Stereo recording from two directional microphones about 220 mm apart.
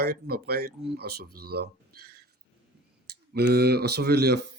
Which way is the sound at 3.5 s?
45° right (ahead or behind).